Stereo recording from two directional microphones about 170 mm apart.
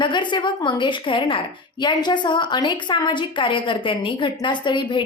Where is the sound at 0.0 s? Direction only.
30° left (ahead or behind).